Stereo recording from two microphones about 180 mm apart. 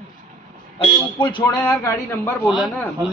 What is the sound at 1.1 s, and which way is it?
Speech, 25° left (ahead or behind).